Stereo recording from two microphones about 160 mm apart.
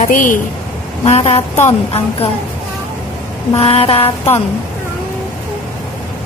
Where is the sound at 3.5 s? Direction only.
35° left (ahead or behind).